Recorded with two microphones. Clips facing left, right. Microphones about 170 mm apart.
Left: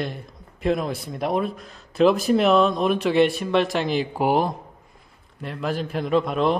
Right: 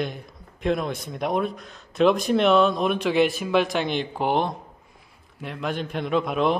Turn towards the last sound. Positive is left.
turn(degrees=0)  # may be behind; listen again after turning